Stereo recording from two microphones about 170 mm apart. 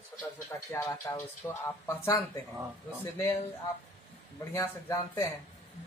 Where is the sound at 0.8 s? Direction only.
20° left (ahead or behind).